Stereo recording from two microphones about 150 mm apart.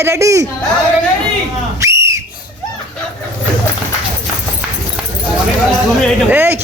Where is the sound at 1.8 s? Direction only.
20° right (ahead or behind).